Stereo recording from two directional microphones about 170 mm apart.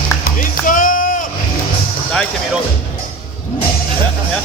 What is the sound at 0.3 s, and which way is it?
Music, 50° left (ahead or behind).